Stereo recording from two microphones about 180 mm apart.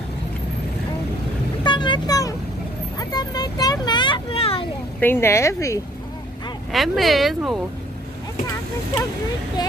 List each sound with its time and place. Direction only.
1.6 s vehicle: 25° left (ahead or behind)
5.0 s speech: 10° left (ahead or behind)
6.7 s speech: centre (ahead or behind)